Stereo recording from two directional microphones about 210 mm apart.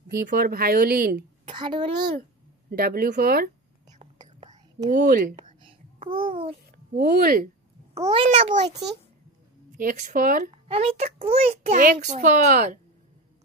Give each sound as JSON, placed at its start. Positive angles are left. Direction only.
{"t": 0.3, "sound": "speech", "side_deg": -45}
{"t": 1.5, "sound": "a child's voice", "side_deg": -20}
{"t": 2.7, "sound": "speech", "side_deg": -45}
{"t": 4.0, "sound": "whispering", "side_deg": -30}
{"t": 5.3, "sound": "whispering", "side_deg": -25}
{"t": 7.0, "sound": "speech", "side_deg": -45}
{"t": 7.9, "sound": "a child's voice", "side_deg": -25}
{"t": 9.8, "sound": "a child's voice", "side_deg": -35}